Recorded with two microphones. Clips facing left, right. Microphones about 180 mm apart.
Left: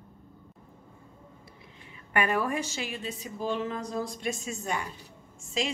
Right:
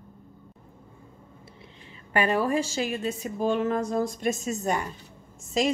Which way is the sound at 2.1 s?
30° right (ahead or behind).